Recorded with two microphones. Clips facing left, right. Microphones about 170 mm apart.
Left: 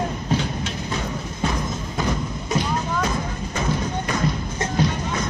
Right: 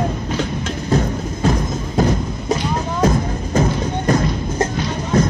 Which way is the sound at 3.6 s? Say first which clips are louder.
Right 6 dB; 45° right (ahead or behind).